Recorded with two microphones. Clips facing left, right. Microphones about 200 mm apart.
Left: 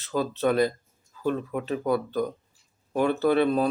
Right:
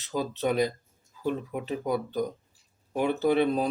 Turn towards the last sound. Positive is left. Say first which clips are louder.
# left 2 dB
turn(degrees=-20)  # may be behind; listen again after turning